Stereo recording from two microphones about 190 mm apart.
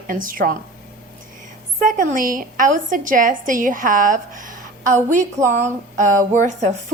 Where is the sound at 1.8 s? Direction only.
45° right (ahead or behind).